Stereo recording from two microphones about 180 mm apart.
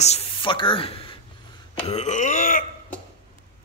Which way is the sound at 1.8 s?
40° left (ahead or behind).